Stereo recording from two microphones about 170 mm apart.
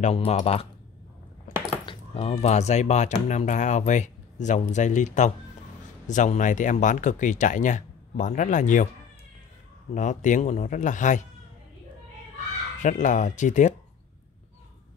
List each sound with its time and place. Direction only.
0.0 s speech: 35° left (ahead or behind)
1.9 s cutlery: 30° left (ahead or behind)
2.3 s speech: 40° left (ahead or behind)
9.9 s speech: 45° left (ahead or behind)
12.8 s speech: 45° left (ahead or behind)